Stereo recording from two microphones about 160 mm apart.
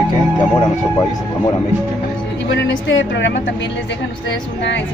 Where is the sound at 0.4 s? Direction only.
30° left (ahead or behind).